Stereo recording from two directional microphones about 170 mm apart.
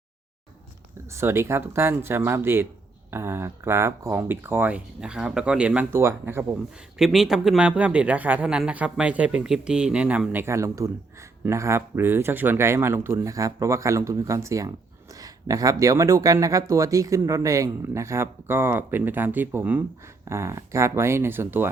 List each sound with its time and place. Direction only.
1.1 s speech: 15° right (ahead or behind)
7.0 s speech: centre (ahead or behind)